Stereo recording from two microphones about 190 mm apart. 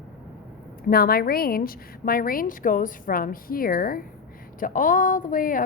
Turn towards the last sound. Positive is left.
turn(degrees=45)  # may be behind; listen again after turning